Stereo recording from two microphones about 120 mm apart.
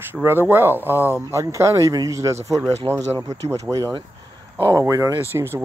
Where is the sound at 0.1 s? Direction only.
20° right (ahead or behind).